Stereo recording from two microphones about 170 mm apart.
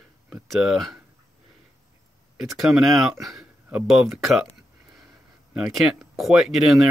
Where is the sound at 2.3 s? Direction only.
Centre (ahead or behind).